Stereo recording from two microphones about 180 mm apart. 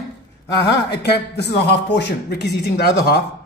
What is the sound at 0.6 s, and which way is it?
A man's voice, 65° left (ahead or behind).